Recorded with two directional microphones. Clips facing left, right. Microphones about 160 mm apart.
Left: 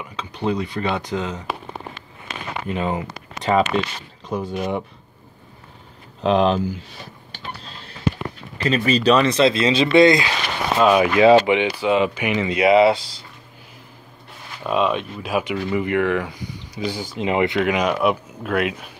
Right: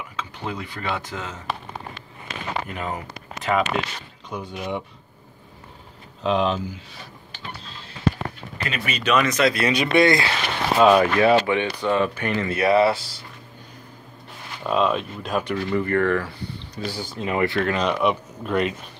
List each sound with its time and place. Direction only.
0.0 s speech: 20° left (ahead or behind)
2.7 s speech: 25° left (ahead or behind)
6.2 s speech: 65° left (ahead or behind)
8.6 s speech: 35° left (ahead or behind)
10.8 s speech: centre (ahead or behind)
11.1 s speech: 15° left (ahead or behind)
14.6 s speech: centre (ahead or behind)